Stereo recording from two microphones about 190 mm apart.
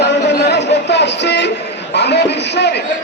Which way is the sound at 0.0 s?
65° left (ahead or behind).